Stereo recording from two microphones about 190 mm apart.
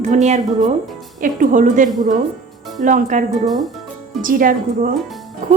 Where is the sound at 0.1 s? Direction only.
40° right (ahead or behind).